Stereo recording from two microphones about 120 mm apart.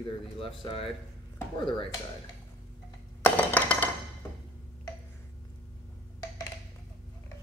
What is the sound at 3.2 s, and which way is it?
Chink, 15° left (ahead or behind).